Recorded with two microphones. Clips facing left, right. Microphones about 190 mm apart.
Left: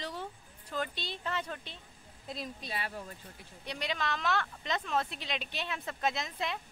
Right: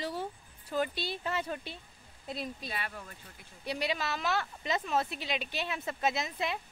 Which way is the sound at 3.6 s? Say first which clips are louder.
Right 2 dB; 5° right (ahead or behind).